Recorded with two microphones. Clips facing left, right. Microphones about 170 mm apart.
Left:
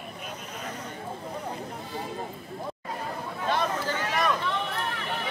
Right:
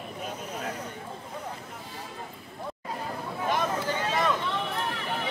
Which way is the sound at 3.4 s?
15° right (ahead or behind).